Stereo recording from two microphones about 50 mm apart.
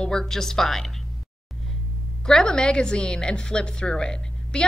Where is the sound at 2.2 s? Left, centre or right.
Centre.